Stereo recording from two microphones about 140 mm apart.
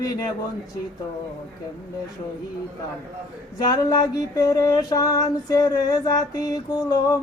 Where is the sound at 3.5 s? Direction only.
25° left (ahead or behind).